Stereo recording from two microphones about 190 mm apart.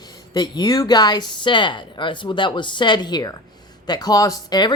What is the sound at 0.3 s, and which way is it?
Speech, 20° left (ahead or behind).